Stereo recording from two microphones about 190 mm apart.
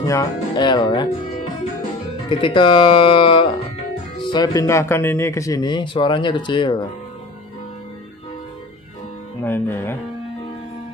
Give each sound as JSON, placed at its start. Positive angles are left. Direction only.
{"t": 0.0, "sound": "speech", "side_deg": 15}
{"t": 2.2, "sound": "speech", "side_deg": 25}
{"t": 9.4, "sound": "speech", "side_deg": 10}